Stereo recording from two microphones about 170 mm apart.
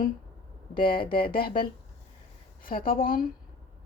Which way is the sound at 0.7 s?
30° left (ahead or behind).